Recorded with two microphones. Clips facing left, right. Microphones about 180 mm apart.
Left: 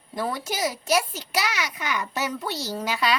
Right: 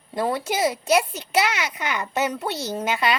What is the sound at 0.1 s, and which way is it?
A child's voice, 25° right (ahead or behind).